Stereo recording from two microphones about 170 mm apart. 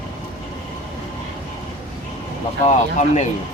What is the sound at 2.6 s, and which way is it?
Speech, 45° left (ahead or behind).